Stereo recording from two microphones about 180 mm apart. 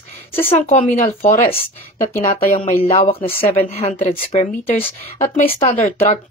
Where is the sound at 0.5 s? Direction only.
40° left (ahead or behind).